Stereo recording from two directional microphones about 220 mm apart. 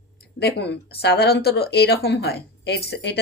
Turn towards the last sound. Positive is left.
turn(degrees=50)  # may be behind; listen again after turning